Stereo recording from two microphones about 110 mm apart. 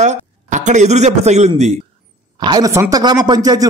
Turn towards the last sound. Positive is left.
turn(degrees=-35)  # may be behind; listen again after turning